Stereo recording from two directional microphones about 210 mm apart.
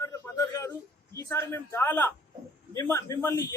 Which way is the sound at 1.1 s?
10° left (ahead or behind).